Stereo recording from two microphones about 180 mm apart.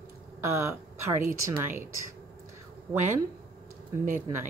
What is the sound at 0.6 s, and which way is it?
Speech, 15° right (ahead or behind).